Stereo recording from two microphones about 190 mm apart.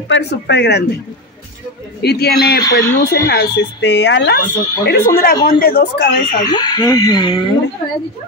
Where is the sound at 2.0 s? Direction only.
55° left (ahead or behind).